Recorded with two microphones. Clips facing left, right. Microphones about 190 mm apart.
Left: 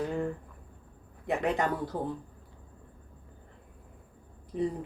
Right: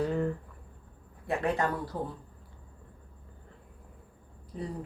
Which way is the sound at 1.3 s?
20° left (ahead or behind).